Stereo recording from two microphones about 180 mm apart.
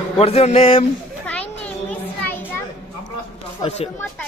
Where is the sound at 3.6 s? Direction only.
35° left (ahead or behind).